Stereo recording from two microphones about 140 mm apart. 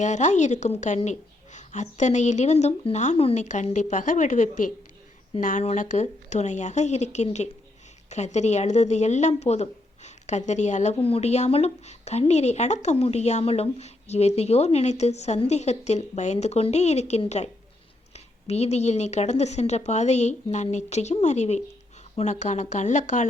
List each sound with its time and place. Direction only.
0.0 s a woman's voice: 60° left (ahead or behind)
10.9 s a woman's voice: 40° left (ahead or behind); by 23.2 s 60° left (ahead or behind)